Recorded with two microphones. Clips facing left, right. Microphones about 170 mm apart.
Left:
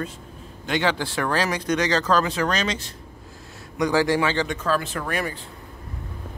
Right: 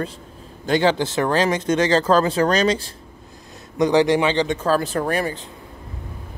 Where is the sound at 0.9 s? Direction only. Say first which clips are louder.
Right 5 dB; 20° right (ahead or behind).